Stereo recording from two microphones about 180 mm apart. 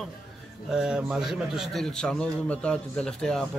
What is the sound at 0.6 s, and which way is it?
A man's voice, 5° right (ahead or behind).